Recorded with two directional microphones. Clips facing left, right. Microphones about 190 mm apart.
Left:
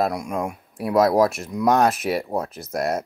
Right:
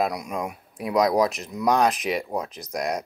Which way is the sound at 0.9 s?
5° left (ahead or behind).